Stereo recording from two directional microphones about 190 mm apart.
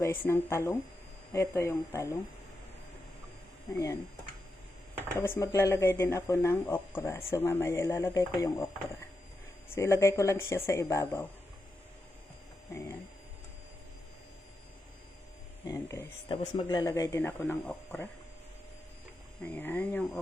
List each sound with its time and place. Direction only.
0.0 s speech: 10° left (ahead or behind)
5.1 s speech: 10° left (ahead or behind)
15.6 s speech: 15° left (ahead or behind)
16.3 s speech: 25° left (ahead or behind); by 18.1 s 10° left (ahead or behind)
19.5 s speech: 10° left (ahead or behind)